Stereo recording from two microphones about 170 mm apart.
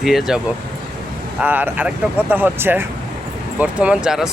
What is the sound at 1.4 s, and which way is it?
Speech, 10° right (ahead or behind).